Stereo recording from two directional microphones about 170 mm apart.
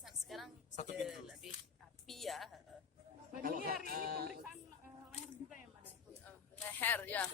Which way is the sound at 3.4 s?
60° right (ahead or behind).